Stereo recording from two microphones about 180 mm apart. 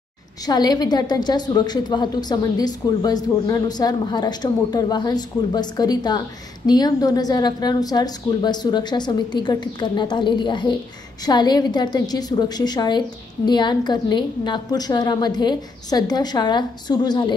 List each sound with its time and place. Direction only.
0.5 s a woman's voice: 20° left (ahead or behind)